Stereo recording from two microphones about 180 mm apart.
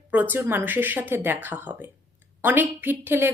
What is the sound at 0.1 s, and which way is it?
Speech, 10° right (ahead or behind).